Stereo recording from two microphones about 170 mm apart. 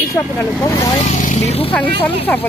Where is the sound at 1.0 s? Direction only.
45° left (ahead or behind).